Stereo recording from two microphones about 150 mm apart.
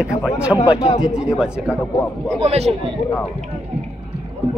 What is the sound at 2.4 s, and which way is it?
Speech, 45° right (ahead or behind).